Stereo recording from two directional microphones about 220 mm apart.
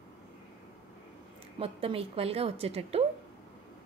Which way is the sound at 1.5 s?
25° right (ahead or behind).